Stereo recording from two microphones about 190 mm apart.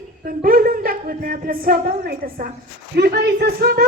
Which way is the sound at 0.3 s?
50° right (ahead or behind).